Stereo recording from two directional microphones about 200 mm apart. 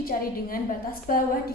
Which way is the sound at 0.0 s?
45° left (ahead or behind).